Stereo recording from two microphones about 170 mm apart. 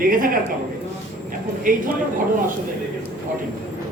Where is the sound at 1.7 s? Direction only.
55° right (ahead or behind).